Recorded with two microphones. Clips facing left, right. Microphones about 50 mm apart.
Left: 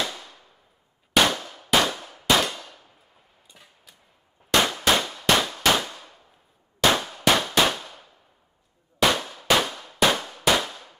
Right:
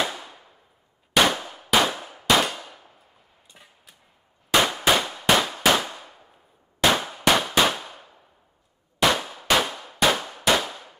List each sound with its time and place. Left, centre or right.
0.0 s a sound: centre
1.3 s clang: centre
3.5 s hammer: centre
4.5 s clang: centre